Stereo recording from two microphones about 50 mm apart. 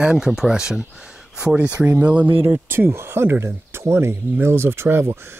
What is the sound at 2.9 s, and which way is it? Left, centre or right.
Speech, right.